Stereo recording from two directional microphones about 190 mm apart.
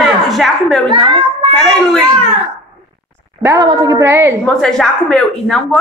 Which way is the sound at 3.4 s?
20° right (ahead or behind).